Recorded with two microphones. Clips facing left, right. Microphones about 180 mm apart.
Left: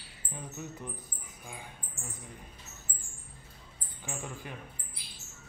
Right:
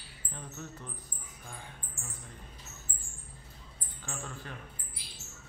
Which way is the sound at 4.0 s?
15° left (ahead or behind).